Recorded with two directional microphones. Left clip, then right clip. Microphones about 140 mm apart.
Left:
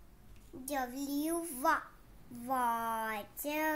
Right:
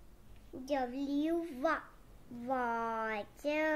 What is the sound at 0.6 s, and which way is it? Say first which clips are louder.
Speech: right 2 dB; 20° right (ahead or behind).